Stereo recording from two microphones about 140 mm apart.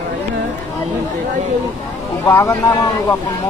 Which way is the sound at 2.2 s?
20° left (ahead or behind).